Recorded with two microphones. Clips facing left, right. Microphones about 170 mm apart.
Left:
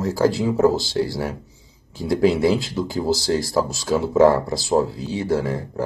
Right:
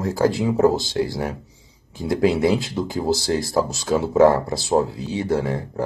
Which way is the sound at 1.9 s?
20° right (ahead or behind).